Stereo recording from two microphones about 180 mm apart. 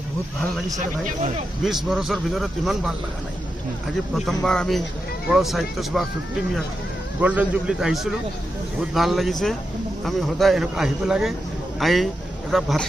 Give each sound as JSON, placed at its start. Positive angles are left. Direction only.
{"t": 0.8, "sound": "speech", "side_deg": -40}
{"t": 1.6, "sound": "speech", "side_deg": 0}
{"t": 4.1, "sound": "speech", "side_deg": 0}
{"t": 7.2, "sound": "speech", "side_deg": -10}